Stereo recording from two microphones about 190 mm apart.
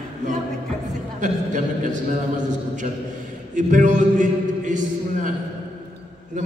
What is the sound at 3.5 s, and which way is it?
A man's voice, 40° right (ahead or behind).